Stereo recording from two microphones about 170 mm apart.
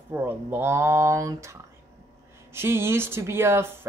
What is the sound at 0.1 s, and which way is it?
Speech, 15° right (ahead or behind).